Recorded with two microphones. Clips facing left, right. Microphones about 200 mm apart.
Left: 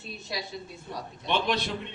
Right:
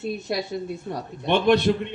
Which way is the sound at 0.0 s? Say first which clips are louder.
Right 10 dB; 55° right (ahead or behind).